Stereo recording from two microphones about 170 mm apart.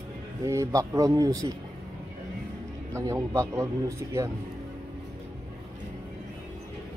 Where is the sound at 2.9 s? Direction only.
15° right (ahead or behind).